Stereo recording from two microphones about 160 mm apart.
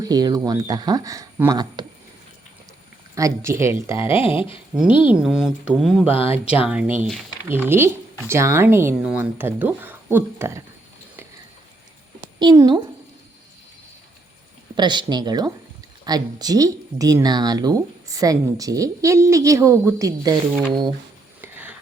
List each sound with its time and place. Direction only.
0.0 s a woman's voice: 25° right (ahead or behind)
3.2 s speech: 20° right (ahead or behind)
3.9 s speech: 35° left (ahead or behind)
4.7 s speech: 5° right (ahead or behind)
6.1 s speech: 35° left (ahead or behind)
6.7 s speech: 10° right (ahead or behind)
12.4 s a woman's voice: 25° right (ahead or behind)
14.8 s a woman's voice: 25° right (ahead or behind)
21.4 s a sound: 10° right (ahead or behind)